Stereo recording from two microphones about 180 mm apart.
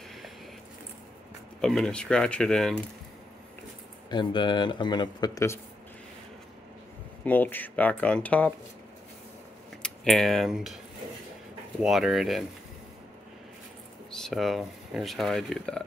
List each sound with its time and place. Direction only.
1.6 s speech: centre (ahead or behind)
4.1 s speech: 25° left (ahead or behind)
7.2 s speech: 10° left (ahead or behind)
9.8 s speech: 5° left (ahead or behind)
11.8 s speech: centre (ahead or behind)
14.2 s speech: centre (ahead or behind)